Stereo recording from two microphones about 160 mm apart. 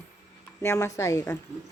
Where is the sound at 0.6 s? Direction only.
20° left (ahead or behind).